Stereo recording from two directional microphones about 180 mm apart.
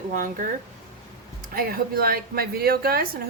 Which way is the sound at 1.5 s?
55° right (ahead or behind).